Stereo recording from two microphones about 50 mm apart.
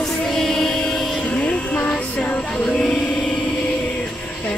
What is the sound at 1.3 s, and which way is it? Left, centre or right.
Music, left.